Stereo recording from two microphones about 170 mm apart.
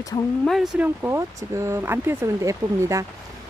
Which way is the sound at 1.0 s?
15° right (ahead or behind).